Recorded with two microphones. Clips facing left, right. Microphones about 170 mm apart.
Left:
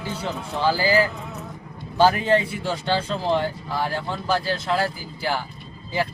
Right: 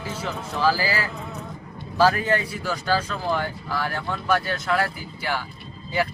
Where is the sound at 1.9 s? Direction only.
25° left (ahead or behind).